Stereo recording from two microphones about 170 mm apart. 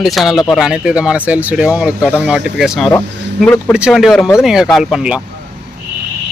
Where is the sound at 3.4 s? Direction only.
10° left (ahead or behind).